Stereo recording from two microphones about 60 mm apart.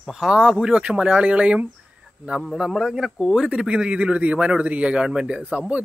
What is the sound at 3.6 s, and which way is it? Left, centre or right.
A man's voice, centre.